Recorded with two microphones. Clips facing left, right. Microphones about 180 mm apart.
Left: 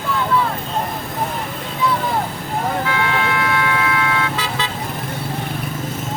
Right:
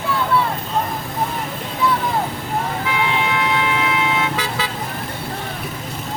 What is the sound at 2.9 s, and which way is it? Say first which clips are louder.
Vehicle: left 1 dB; 20° right (ahead or behind).